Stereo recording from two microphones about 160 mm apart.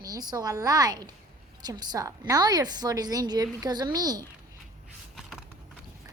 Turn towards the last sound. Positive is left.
turn(degrees=-25)  # may be behind; listen again after turning